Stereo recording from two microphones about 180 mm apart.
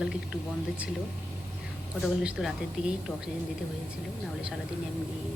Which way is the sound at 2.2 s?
5° right (ahead or behind).